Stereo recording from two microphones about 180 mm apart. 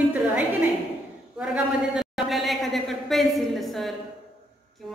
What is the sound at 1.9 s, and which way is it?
A woman's voice, centre (ahead or behind).